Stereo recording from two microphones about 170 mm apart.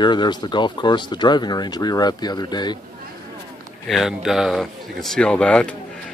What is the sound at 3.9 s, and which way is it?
Speech, centre (ahead or behind).